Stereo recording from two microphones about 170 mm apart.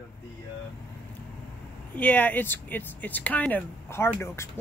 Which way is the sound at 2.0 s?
10° left (ahead or behind).